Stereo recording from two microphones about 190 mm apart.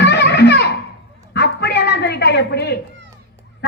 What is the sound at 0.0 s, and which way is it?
Music, 65° left (ahead or behind).